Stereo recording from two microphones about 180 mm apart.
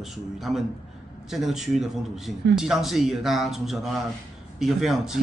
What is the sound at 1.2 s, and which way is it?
A man's voice, centre (ahead or behind).